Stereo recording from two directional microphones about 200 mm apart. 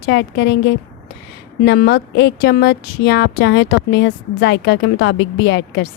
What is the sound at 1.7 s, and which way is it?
A woman's voice, 55° left (ahead or behind).